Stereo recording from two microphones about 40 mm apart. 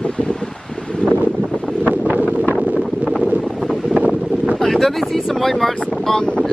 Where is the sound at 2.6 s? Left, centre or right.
Right.